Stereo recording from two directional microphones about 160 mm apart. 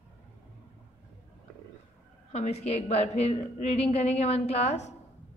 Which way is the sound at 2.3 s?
40° left (ahead or behind).